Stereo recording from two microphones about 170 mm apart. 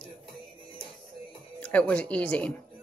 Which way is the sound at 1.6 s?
5° left (ahead or behind).